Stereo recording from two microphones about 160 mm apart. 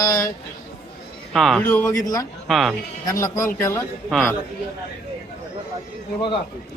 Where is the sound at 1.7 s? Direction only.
15° left (ahead or behind).